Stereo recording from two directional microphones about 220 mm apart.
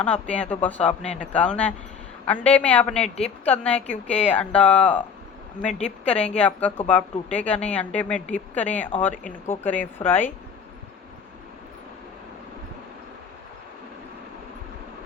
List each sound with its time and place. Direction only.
0.0 s a woman's voice: 5° left (ahead or behind)
5.6 s a woman's voice: 30° left (ahead or behind)
6.1 s a woman's voice: 5° left (ahead or behind)